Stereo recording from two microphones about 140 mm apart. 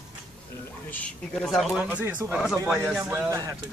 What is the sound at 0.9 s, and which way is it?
A man's voice, 5° left (ahead or behind).